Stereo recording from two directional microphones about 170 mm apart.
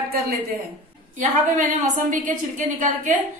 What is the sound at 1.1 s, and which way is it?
Speech, 50° right (ahead or behind).